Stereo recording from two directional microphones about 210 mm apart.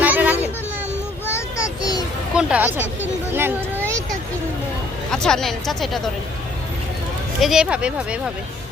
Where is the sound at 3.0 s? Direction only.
10° right (ahead or behind).